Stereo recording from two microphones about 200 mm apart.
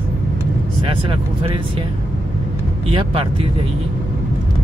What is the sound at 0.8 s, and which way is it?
Speech, 25° right (ahead or behind).